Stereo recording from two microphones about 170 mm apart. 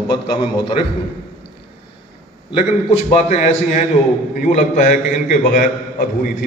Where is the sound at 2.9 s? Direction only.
40° left (ahead or behind).